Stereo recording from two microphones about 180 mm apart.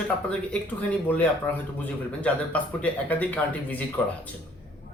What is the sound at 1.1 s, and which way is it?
Speech, 10° left (ahead or behind).